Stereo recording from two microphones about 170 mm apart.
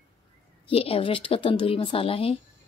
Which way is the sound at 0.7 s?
35° left (ahead or behind).